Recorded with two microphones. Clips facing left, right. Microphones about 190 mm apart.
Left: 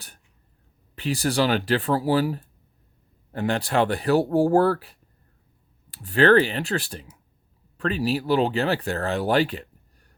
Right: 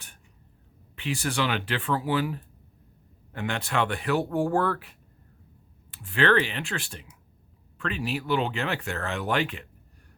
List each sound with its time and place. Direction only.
0.9 s speech: 40° left (ahead or behind)